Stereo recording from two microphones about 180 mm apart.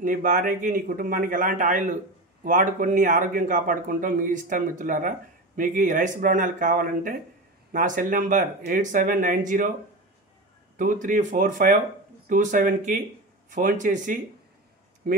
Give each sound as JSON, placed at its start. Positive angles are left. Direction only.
{"t": 0.0, "sound": "speech", "side_deg": -45}
{"t": 10.8, "sound": "speech", "side_deg": -45}